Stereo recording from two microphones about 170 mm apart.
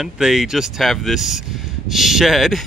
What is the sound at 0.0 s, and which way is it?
Speech, 5° right (ahead or behind).